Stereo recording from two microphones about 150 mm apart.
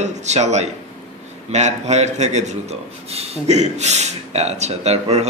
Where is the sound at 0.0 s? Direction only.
50° right (ahead or behind).